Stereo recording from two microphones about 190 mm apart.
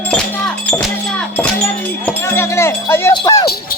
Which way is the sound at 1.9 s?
10° left (ahead or behind).